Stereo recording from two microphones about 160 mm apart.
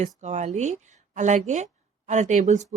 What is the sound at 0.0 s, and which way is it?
Speech, 45° right (ahead or behind).